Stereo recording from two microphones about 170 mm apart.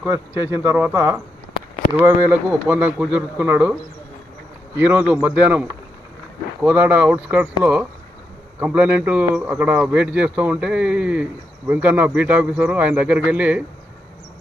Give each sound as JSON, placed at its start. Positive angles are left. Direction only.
{"t": 0.0, "sound": "speech", "side_deg": -15}
{"t": 4.8, "sound": "speech", "side_deg": -10}